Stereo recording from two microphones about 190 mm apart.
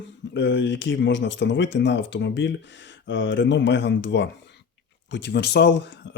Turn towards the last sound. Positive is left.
turn(degrees=65)  # may be behind; listen again after turning